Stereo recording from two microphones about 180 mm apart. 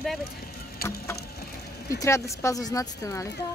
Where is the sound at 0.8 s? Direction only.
15° left (ahead or behind).